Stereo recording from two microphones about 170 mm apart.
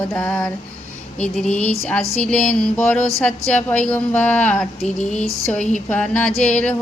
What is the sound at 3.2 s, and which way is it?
Speech, 5° left (ahead or behind).